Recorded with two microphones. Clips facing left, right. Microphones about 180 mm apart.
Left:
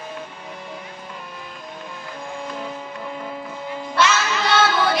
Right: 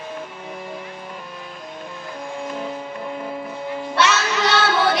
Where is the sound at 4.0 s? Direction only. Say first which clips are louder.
Even; 70° right (ahead or behind).